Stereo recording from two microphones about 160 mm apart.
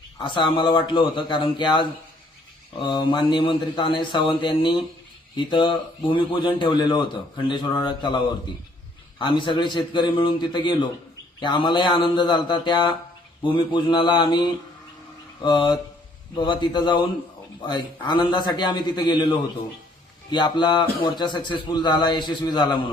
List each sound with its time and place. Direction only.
0.2 s a man's voice: 30° left (ahead or behind)